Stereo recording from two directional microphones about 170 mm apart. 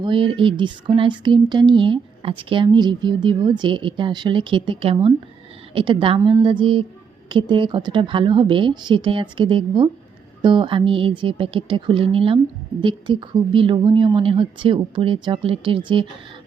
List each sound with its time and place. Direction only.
0.0 s speech: 30° right (ahead or behind)